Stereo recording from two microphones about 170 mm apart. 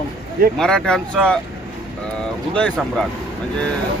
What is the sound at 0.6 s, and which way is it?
Speech, 5° left (ahead or behind).